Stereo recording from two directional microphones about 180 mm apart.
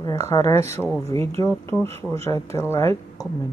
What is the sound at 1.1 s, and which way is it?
Speech, 30° right (ahead or behind).